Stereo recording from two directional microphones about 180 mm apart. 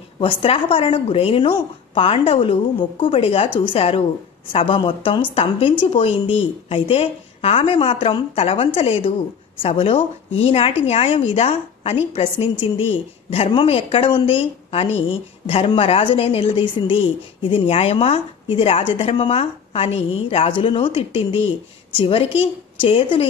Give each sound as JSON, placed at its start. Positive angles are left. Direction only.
{"t": 0.2, "sound": "a woman's voice", "side_deg": 30}